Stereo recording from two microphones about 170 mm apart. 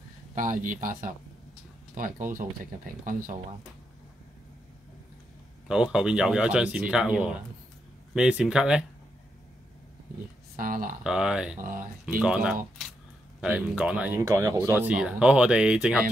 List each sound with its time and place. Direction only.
0.3 s speech: 50° right (ahead or behind)
5.7 s speech: 5° right (ahead or behind)
10.6 s speech: 55° right (ahead or behind)
11.1 s speech: 5° right (ahead or behind)